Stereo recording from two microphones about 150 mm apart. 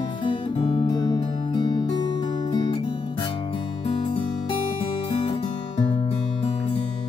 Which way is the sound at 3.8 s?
40° left (ahead or behind).